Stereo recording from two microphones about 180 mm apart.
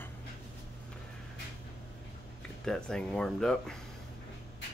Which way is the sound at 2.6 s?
5° left (ahead or behind).